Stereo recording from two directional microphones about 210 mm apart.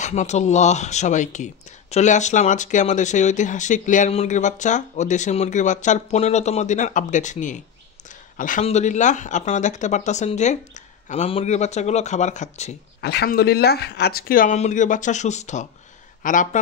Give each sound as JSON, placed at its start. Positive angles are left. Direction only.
{"t": 0.0, "sound": "speech", "side_deg": 35}
{"t": 13.0, "sound": "speech", "side_deg": 50}